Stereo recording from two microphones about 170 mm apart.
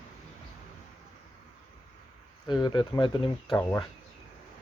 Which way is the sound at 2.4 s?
25° left (ahead or behind).